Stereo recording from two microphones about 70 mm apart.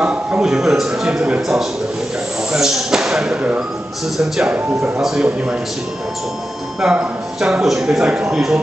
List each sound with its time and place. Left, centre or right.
0.0 s a sound: centre
2.5 s speech: centre
4.6 s speech: right
5.0 s speech: centre
6.8 s speech: centre